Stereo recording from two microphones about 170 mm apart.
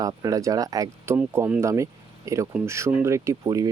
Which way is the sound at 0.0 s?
20° right (ahead or behind).